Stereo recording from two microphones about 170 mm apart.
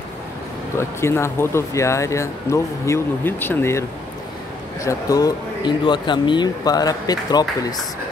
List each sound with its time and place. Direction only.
0.7 s speech: 15° left (ahead or behind)
4.8 s speech: 20° left (ahead or behind)